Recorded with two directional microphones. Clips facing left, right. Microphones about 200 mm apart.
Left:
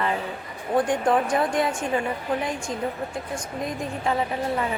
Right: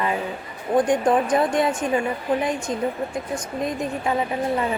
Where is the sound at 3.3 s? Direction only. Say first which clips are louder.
Right 4 dB; 20° right (ahead or behind).